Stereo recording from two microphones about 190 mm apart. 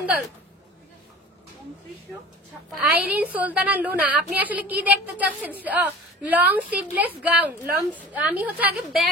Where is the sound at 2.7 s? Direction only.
10° right (ahead or behind).